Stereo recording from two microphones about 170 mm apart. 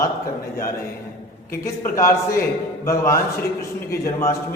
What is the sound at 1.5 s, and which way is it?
A man's voice, 15° left (ahead or behind).